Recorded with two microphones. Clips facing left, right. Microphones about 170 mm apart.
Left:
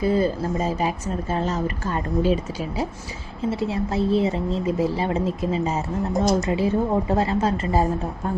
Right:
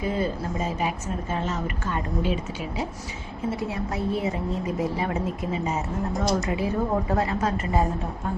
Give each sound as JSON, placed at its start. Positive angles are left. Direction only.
{"t": 0.0, "sound": "a woman's voice", "side_deg": 35}